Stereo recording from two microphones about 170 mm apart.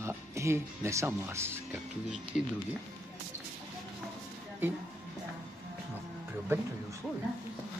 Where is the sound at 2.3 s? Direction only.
Centre (ahead or behind).